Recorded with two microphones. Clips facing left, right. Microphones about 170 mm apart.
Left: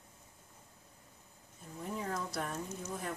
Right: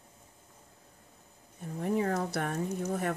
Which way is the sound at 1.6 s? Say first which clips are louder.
Right 11 dB; 65° right (ahead or behind).